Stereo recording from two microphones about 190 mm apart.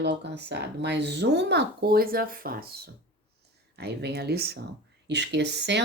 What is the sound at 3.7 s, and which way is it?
Speech, 60° right (ahead or behind).